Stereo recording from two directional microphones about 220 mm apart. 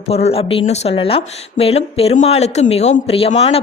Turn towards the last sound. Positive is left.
turn(degrees=25)  # may be behind; listen again after turning